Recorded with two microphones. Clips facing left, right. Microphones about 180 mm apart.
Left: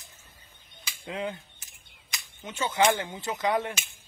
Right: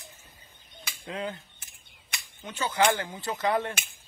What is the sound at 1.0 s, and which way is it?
Speech, 10° left (ahead or behind).